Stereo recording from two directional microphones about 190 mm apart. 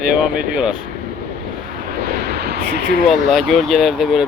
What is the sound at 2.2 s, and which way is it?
Vehicle, 55° right (ahead or behind).